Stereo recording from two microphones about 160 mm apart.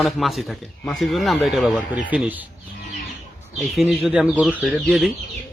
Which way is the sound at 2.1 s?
10° right (ahead or behind).